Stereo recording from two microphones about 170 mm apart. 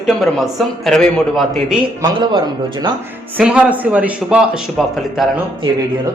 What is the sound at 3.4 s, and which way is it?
A man's voice, 5° right (ahead or behind).